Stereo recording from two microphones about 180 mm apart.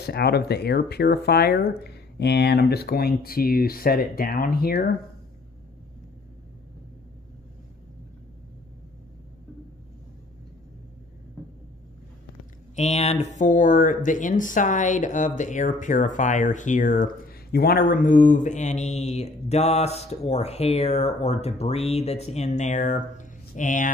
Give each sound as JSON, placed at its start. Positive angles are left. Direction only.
{"t": 0.0, "sound": "speech", "side_deg": 65}
{"t": 12.7, "sound": "speech", "side_deg": 35}